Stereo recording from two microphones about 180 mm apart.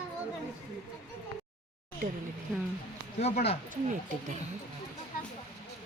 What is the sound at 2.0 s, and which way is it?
Speech, 50° right (ahead or behind).